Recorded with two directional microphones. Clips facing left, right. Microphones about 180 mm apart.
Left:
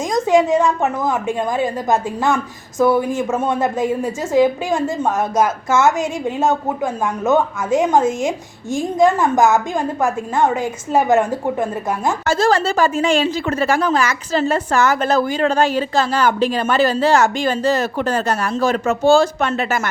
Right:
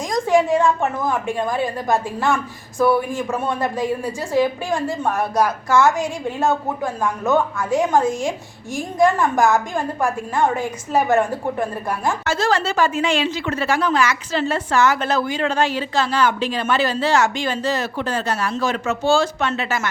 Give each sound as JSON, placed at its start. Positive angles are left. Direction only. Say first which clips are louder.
{"t": 0.1, "sound": "a woman's voice", "louder": "left 2 dB", "side_deg": 20}
{"t": 12.2, "sound": "speech", "louder": "left 6 dB", "side_deg": 45}